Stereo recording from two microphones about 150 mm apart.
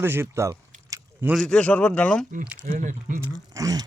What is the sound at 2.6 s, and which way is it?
Speech, 60° right (ahead or behind).